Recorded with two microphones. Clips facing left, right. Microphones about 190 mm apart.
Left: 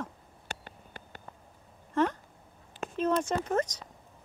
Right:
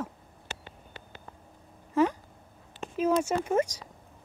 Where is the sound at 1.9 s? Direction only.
10° right (ahead or behind).